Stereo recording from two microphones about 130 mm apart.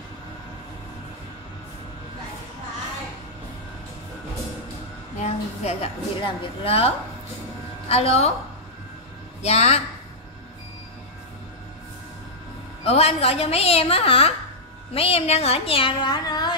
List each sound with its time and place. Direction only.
5.2 s a woman's voice: 50° left (ahead or behind)
7.9 s a woman's voice: 50° left (ahead or behind)
9.4 s a woman's voice: 55° left (ahead or behind)
12.8 s a woman's voice: 50° left (ahead or behind); by 16.5 s 30° left (ahead or behind)